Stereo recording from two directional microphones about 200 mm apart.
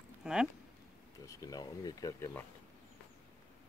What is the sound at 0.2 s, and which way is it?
Speech, 5° right (ahead or behind).